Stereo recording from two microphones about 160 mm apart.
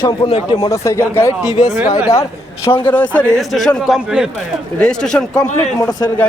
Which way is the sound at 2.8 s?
10° left (ahead or behind).